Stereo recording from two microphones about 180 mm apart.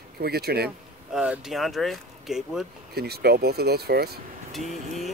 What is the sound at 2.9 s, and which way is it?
Speech, 60° right (ahead or behind).